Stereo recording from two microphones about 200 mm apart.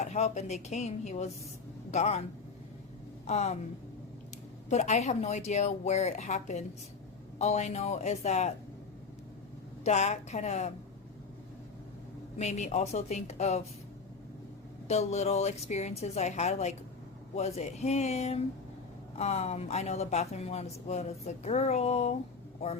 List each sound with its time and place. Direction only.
0.0 s speech: 35° left (ahead or behind)
3.2 s speech: 35° left (ahead or behind)
4.7 s speech: 35° left (ahead or behind)
9.8 s speech: 35° left (ahead or behind)
12.4 s speech: 35° left (ahead or behind)
14.8 s speech: 35° left (ahead or behind)